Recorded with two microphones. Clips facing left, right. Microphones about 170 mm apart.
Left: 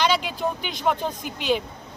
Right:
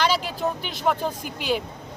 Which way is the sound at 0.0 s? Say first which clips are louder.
Even; 5° right (ahead or behind).